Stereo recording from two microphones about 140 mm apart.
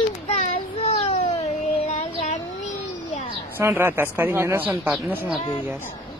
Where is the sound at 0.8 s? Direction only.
50° left (ahead or behind).